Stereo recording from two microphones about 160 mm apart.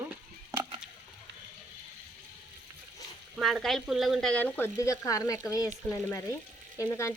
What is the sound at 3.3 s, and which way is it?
Speech, centre (ahead or behind).